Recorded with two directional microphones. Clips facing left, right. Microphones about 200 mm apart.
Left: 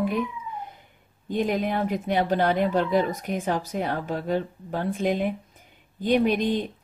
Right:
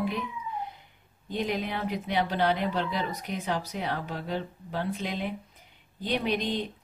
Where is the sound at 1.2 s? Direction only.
50° left (ahead or behind).